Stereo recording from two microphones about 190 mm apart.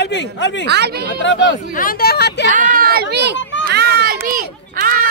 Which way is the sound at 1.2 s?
70° left (ahead or behind).